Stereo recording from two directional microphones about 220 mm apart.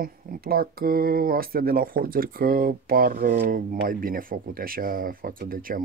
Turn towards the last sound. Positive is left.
turn(degrees=-40)  # may be behind; listen again after turning